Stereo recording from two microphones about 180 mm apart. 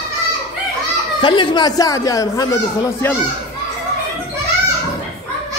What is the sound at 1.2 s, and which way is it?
Speech, 25° left (ahead or behind).